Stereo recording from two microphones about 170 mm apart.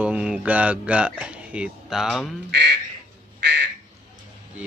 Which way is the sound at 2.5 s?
75° right (ahead or behind).